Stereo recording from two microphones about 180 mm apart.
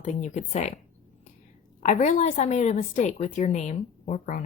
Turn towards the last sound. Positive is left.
turn(degrees=45)  # may be behind; listen again after turning